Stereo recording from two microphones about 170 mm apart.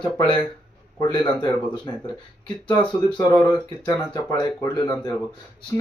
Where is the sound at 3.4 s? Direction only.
25° left (ahead or behind).